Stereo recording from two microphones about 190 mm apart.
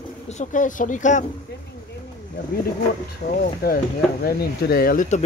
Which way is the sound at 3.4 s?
50° left (ahead or behind).